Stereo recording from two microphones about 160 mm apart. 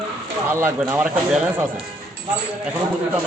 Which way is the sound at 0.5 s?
15° right (ahead or behind).